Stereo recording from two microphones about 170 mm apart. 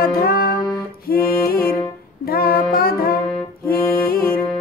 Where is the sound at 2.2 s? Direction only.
60° left (ahead or behind).